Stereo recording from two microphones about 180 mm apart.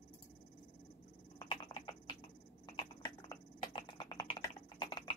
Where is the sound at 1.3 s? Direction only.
25° left (ahead or behind).